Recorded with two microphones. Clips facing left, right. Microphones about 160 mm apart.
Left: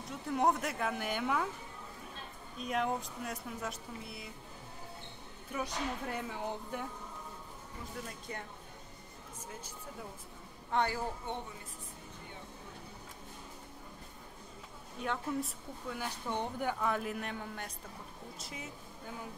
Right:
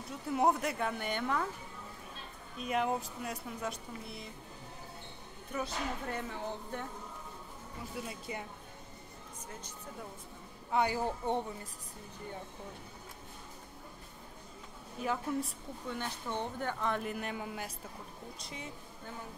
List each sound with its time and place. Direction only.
0.3 s speech: 5° right (ahead or behind)
2.6 s speech: centre (ahead or behind)
5.5 s speech: 10° left (ahead or behind)
8.1 s speech: 10° right (ahead or behind)
10.7 s speech: 5° right (ahead or behind)
11.2 s speech: 35° right (ahead or behind)
15.0 s speech: centre (ahead or behind)
16.3 s speech: 15° left (ahead or behind)